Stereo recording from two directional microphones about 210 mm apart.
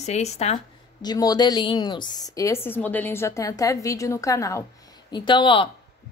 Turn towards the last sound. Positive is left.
turn(degrees=25)  # may be behind; listen again after turning